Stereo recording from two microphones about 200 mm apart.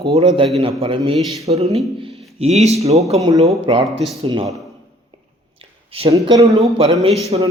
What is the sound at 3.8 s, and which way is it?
Speech, centre (ahead or behind).